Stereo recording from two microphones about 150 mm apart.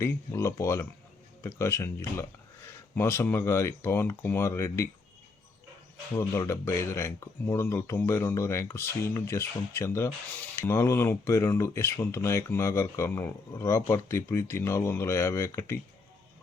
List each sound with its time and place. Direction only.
0.0 s speech: 15° left (ahead or behind)
6.1 s speech: 15° left (ahead or behind)